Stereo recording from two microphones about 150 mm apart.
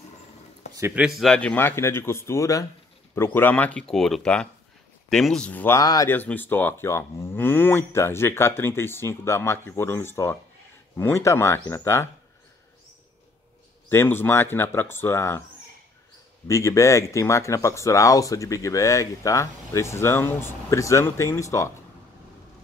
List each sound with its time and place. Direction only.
0.7 s speech: 15° right (ahead or behind)
1.0 s speech: centre (ahead or behind); by 6.0 s 20° left (ahead or behind)
6.0 s speech: 10° left (ahead or behind)
13.8 s speech: 15° left (ahead or behind)
16.4 s speech: 20° left (ahead or behind)